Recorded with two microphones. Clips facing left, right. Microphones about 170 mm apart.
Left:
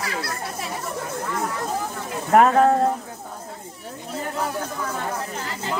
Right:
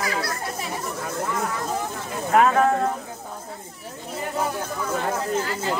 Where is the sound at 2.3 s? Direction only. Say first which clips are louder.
Left 3 dB; 40° left (ahead or behind).